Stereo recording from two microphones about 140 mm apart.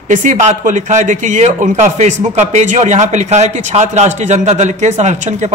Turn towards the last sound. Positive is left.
turn(degrees=-55)  # may be behind; listen again after turning